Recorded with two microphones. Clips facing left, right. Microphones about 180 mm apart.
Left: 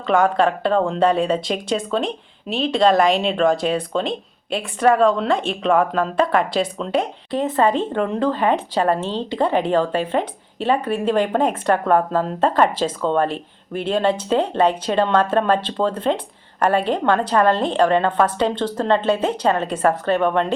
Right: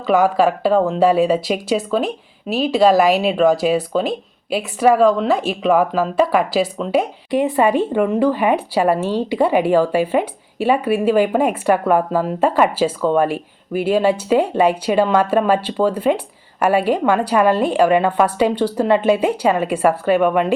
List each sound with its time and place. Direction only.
0.1 s speech: 5° right (ahead or behind)